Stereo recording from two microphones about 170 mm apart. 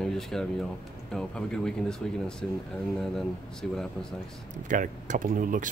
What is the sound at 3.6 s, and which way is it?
Speech, 5° left (ahead or behind).